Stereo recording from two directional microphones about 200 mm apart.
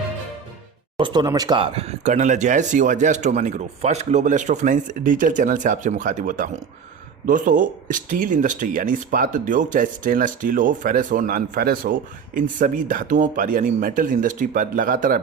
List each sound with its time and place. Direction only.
0.9 s speech: 20° right (ahead or behind); by 15.2 s 45° right (ahead or behind)